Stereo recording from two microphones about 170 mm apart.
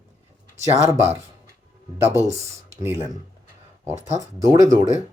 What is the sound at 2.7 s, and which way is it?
Speech, 15° right (ahead or behind).